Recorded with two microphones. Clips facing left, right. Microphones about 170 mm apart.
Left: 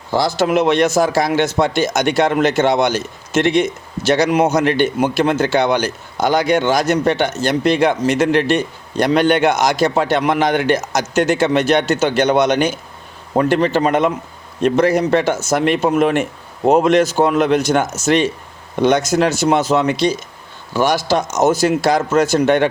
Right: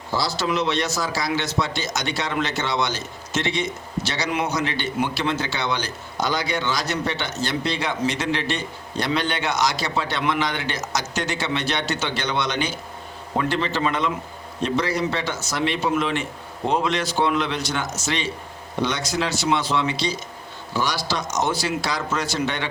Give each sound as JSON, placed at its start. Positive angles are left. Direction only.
{"t": 0.2, "sound": "speech", "side_deg": 50}